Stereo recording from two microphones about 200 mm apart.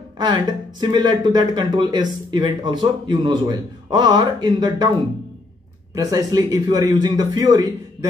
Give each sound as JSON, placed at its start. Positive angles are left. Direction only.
{"t": 0.2, "sound": "speech", "side_deg": -20}
{"t": 5.9, "sound": "speech", "side_deg": -20}